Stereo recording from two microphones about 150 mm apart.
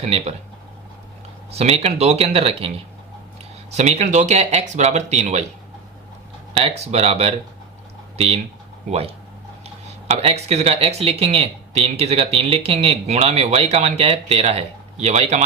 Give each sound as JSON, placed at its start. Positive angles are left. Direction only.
{"t": 0.0, "sound": "speech", "side_deg": -45}
{"t": 1.5, "sound": "speech", "side_deg": -45}
{"t": 3.7, "sound": "speech", "side_deg": -45}
{"t": 6.5, "sound": "speech", "side_deg": -45}
{"t": 8.9, "sound": "speech", "side_deg": -40}